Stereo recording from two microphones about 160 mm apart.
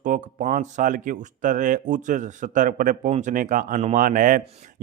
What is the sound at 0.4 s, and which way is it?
A man's voice, 50° right (ahead or behind).